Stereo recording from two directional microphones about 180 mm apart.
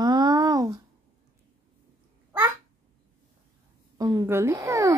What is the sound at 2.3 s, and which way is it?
Babbling, 20° right (ahead or behind).